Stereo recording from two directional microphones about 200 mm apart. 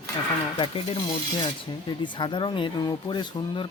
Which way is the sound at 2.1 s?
25° left (ahead or behind).